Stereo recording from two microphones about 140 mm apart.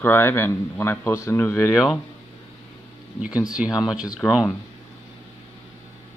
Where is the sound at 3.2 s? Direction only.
10° right (ahead or behind).